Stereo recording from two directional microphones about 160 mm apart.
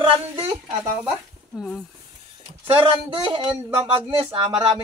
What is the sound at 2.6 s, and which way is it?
Speech, 35° right (ahead or behind).